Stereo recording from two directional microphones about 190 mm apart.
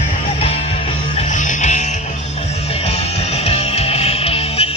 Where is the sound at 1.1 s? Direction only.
40° left (ahead or behind).